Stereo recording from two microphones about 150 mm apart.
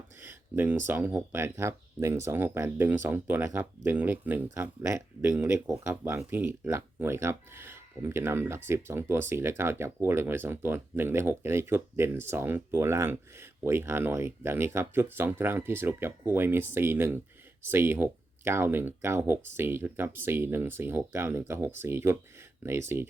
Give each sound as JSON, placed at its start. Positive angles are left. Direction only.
{"t": 0.2, "sound": "speech", "side_deg": -15}